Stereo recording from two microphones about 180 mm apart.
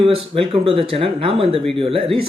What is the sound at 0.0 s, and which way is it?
Speech, 30° right (ahead or behind).